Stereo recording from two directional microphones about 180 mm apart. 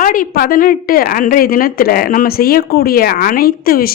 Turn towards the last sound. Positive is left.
turn(degrees=55)  # may be behind; listen again after turning